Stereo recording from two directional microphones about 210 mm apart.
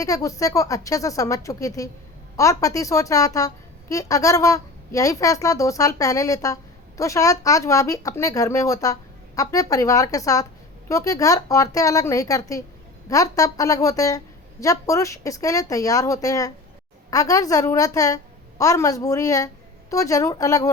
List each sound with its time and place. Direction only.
0.0 s a woman's voice: 15° left (ahead or behind)